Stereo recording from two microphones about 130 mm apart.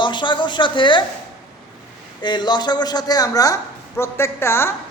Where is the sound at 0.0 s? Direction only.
35° left (ahead or behind).